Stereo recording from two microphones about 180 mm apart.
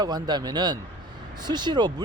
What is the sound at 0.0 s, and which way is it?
Speech, 25° right (ahead or behind).